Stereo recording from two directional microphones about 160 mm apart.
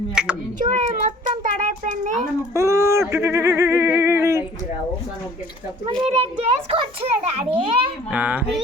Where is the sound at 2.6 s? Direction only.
20° right (ahead or behind).